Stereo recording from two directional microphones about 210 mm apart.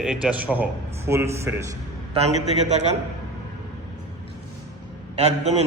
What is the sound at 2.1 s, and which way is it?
Speech, 30° right (ahead or behind).